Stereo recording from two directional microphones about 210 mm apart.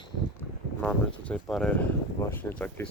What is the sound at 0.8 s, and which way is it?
Speech, 5° left (ahead or behind).